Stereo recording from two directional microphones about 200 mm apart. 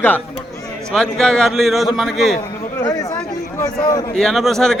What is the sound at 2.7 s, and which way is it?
Chatter, 15° left (ahead or behind).